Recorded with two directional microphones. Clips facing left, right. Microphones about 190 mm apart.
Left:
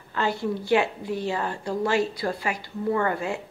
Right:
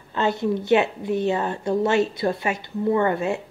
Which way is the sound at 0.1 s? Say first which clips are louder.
Right 4 dB; 20° right (ahead or behind).